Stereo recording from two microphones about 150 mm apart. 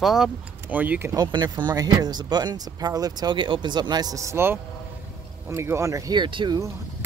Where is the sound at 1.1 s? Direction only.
30° right (ahead or behind).